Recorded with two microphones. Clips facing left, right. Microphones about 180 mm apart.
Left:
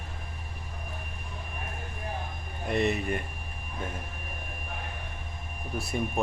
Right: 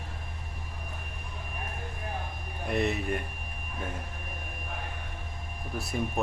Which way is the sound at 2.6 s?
Centre (ahead or behind).